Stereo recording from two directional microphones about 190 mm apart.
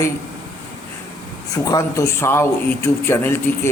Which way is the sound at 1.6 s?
15° left (ahead or behind).